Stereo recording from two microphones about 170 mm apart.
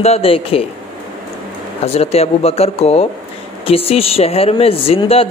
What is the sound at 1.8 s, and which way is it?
A man's voice, 40° left (ahead or behind).